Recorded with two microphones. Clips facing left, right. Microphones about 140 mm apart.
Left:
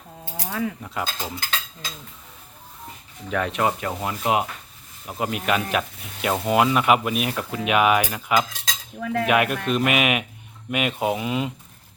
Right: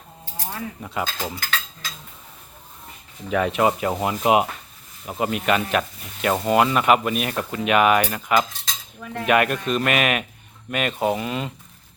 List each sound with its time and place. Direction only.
0.8 s speech: centre (ahead or behind)
1.4 s stir: 30° left (ahead or behind)
3.2 s speech: 5° right (ahead or behind)
5.0 s speech: centre (ahead or behind)
8.6 s cutlery: 90° left
9.2 s speech: 5° left (ahead or behind)